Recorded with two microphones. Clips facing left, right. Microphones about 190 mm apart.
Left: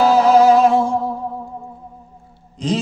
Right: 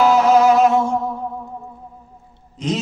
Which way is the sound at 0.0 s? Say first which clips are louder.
Left 1 dB; 35° left (ahead or behind).